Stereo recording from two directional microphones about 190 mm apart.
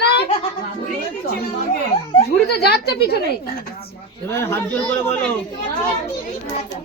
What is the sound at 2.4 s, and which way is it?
Speech, 60° left (ahead or behind).